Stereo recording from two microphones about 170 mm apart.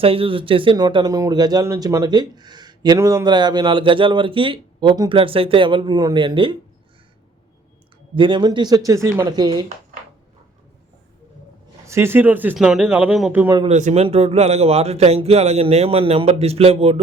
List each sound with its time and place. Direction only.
0.0 s speech: 35° right (ahead or behind)
8.1 s speech: 30° right (ahead or behind)
11.9 s speech: 15° right (ahead or behind)
13.7 s speech: 45° right (ahead or behind)